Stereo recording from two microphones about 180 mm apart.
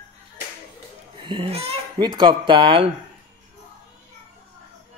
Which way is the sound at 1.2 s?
30° right (ahead or behind).